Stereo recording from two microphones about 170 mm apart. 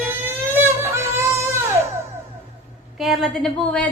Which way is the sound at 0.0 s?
10° right (ahead or behind).